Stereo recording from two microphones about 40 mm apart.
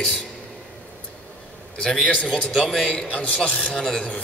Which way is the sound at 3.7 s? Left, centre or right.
Centre.